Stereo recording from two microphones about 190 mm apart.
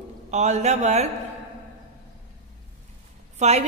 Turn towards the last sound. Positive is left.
turn(degrees=-35)  # may be behind; listen again after turning